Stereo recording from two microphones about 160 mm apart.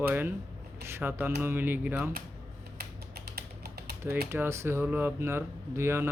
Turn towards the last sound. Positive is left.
turn(degrees=-15)  # may be behind; listen again after turning